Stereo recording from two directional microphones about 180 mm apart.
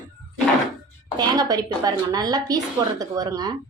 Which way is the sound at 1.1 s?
20° right (ahead or behind).